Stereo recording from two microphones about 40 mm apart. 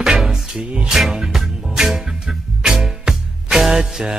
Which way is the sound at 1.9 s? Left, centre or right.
Centre.